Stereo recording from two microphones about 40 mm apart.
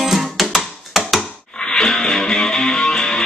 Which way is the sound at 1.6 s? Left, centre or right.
Centre.